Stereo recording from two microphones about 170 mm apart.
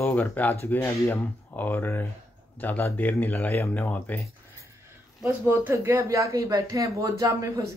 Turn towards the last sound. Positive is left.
turn(degrees=-20)  # may be behind; listen again after turning